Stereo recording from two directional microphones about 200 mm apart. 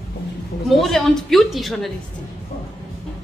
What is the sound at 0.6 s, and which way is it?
A woman's voice, centre (ahead or behind).